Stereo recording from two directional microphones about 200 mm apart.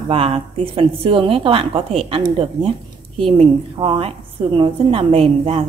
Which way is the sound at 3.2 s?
25° right (ahead or behind).